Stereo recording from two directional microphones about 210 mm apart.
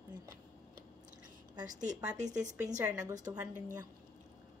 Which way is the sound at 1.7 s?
35° right (ahead or behind).